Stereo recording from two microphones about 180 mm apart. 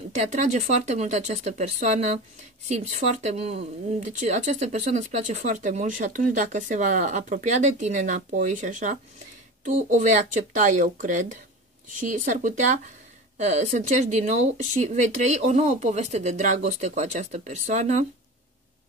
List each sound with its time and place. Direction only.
0.1 s speech: 40° right (ahead or behind)